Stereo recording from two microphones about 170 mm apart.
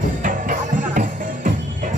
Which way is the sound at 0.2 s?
55° right (ahead or behind).